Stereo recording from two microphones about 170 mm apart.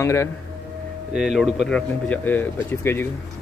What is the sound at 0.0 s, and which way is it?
Speech, 15° left (ahead or behind).